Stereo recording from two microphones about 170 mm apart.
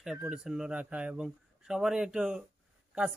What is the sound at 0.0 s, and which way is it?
A man's voice, 5° right (ahead or behind).